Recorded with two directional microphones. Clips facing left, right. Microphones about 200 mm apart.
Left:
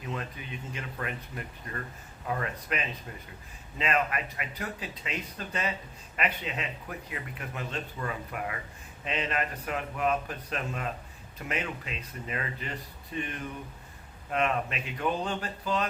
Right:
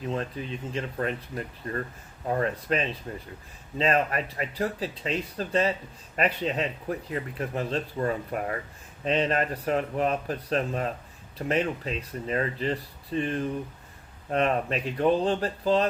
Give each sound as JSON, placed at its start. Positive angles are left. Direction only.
{"t": 0.1, "sound": "speech", "side_deg": -30}